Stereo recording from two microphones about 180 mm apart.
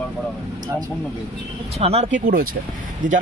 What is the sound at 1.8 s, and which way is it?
Speech, 35° right (ahead or behind).